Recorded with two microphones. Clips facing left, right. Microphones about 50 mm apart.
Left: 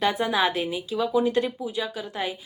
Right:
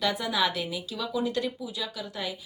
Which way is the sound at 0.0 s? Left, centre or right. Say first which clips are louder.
Left 4 dB; left.